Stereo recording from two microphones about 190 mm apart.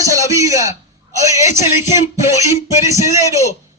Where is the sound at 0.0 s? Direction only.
15° right (ahead or behind).